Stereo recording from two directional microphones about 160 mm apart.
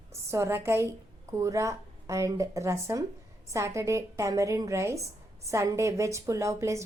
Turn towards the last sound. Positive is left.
turn(degrees=-20)  # may be behind; listen again after turning